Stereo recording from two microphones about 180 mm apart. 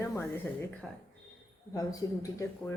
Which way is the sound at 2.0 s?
20° left (ahead or behind).